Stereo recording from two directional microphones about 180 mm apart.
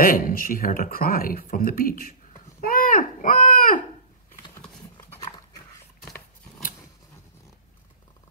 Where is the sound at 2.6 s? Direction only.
50° left (ahead or behind).